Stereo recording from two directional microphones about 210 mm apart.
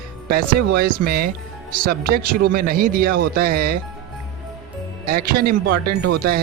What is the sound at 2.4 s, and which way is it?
A man's voice, 45° right (ahead or behind).